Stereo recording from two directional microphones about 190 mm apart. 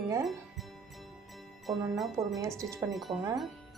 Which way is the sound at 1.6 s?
Centre (ahead or behind).